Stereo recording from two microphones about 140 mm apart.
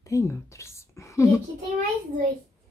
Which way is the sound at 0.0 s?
20° left (ahead or behind).